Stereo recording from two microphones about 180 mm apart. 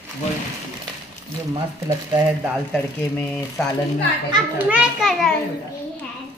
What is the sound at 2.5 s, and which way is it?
Speech, 5° left (ahead or behind).